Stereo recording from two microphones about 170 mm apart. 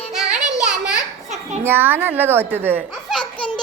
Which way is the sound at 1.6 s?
10° right (ahead or behind).